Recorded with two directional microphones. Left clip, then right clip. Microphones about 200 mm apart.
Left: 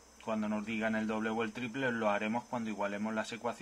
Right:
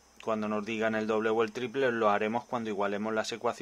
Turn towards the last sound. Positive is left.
turn(degrees=-50)  # may be behind; listen again after turning